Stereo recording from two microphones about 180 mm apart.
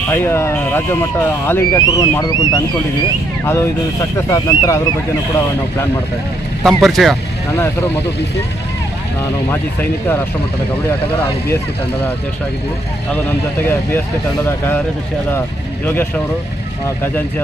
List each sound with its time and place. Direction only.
0.1 s speech: 15° left (ahead or behind)
6.6 s speech: centre (ahead or behind)
13.1 s speech: 10° left (ahead or behind)
15.3 s speech: 10° left (ahead or behind)